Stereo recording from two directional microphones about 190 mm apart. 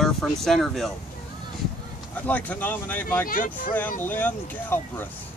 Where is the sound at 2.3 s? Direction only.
10° left (ahead or behind).